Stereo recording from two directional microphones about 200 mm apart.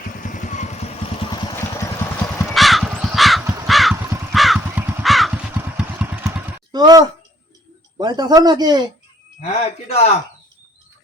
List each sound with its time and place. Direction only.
0.2 s vehicle: 40° left (ahead or behind)
1.3 s vehicle: 20° left (ahead or behind)
2.4 s crow: centre (ahead or behind)
6.7 s speech: 20° right (ahead or behind)
9.4 s a man's voice: 35° left (ahead or behind)